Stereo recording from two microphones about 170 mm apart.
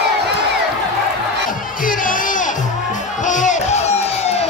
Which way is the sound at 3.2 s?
45° left (ahead or behind).